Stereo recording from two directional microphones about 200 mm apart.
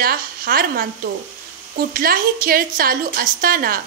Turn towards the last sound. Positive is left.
turn(degrees=-45)  # may be behind; listen again after turning